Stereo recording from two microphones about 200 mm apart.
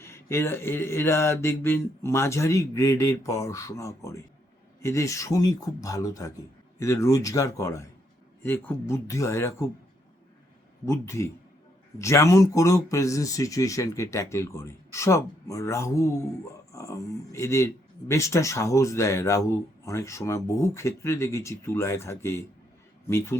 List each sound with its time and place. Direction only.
0.0 s speech: 15° left (ahead or behind)
10.8 s speech: 15° left (ahead or behind)